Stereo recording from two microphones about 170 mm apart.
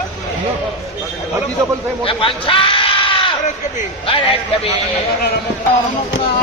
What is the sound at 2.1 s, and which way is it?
Sheep, 30° left (ahead or behind).